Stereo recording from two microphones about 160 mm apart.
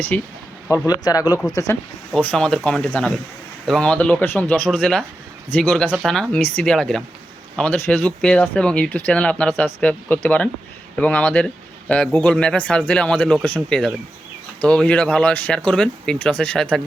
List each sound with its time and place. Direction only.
0.1 s speech: 10° left (ahead or behind)
0.7 s speech: 25° left (ahead or behind)
2.1 s speech: 5° left (ahead or behind)
4.6 s speech: centre (ahead or behind)